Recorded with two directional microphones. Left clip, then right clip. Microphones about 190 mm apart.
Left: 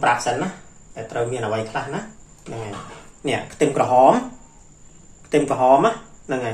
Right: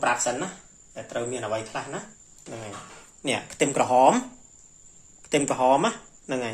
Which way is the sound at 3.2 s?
60° right (ahead or behind).